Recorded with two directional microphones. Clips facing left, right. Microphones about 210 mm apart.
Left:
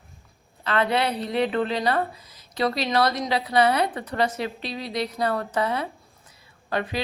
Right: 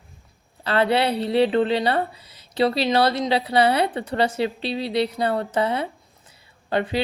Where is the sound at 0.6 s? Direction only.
30° right (ahead or behind).